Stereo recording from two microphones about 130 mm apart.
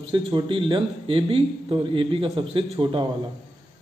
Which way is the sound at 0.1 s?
40° right (ahead or behind).